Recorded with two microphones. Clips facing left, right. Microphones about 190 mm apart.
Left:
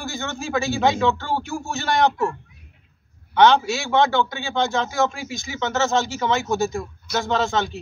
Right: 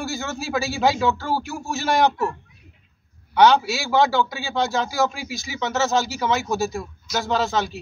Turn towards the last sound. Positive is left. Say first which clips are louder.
# even
turn(degrees=0)  # may be behind; listen again after turning